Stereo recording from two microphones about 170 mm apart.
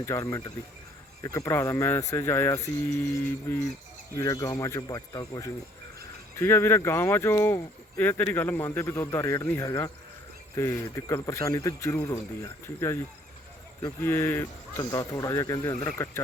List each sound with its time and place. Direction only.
0.0 s speech: 15° left (ahead or behind)